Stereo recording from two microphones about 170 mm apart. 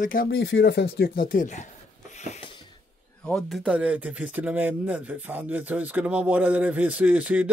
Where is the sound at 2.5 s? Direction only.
25° left (ahead or behind).